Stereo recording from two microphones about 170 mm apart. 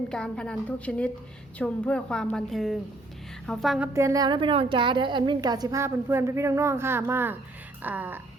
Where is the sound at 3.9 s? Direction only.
20° right (ahead or behind).